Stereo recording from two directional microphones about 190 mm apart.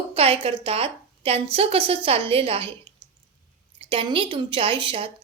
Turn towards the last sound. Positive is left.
turn(degrees=-25)  # may be behind; listen again after turning